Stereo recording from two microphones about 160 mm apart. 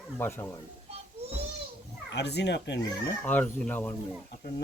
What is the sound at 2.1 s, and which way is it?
Speech, 90° left.